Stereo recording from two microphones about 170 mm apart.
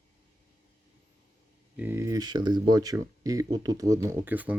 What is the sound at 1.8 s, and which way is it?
Speech, 15° right (ahead or behind).